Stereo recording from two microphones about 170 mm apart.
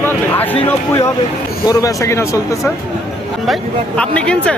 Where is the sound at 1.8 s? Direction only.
15° left (ahead or behind).